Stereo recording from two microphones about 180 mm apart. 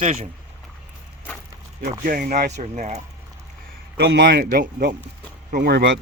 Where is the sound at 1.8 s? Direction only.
50° right (ahead or behind).